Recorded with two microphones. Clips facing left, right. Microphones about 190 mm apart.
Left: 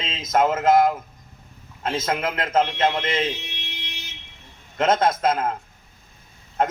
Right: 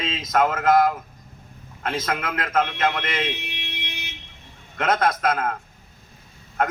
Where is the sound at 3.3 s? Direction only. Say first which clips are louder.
Right 2 dB; 60° right (ahead or behind).